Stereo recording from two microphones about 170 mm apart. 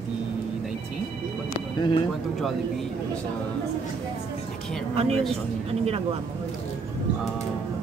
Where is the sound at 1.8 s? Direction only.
30° left (ahead or behind).